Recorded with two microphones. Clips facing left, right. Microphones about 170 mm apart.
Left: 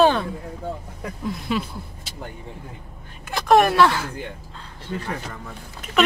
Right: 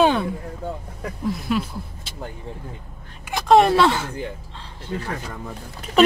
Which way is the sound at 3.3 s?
20° right (ahead or behind).